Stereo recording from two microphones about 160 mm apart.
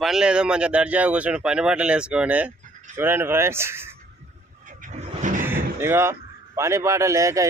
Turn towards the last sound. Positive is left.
turn(degrees=-20)  # may be behind; listen again after turning